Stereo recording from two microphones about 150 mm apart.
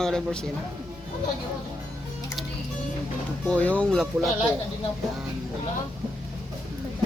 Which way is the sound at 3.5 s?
10° left (ahead or behind).